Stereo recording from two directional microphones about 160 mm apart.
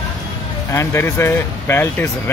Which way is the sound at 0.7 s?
15° left (ahead or behind).